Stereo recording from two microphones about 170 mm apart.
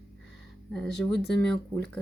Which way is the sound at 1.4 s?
5° left (ahead or behind).